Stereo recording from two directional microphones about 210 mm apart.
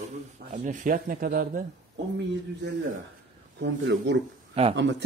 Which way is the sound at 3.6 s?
55° right (ahead or behind).